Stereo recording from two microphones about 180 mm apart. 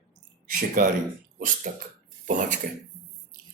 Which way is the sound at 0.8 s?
50° right (ahead or behind).